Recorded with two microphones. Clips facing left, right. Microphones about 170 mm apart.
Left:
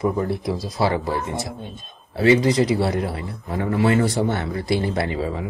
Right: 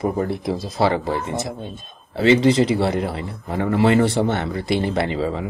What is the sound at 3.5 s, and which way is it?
Speech, 70° right (ahead or behind).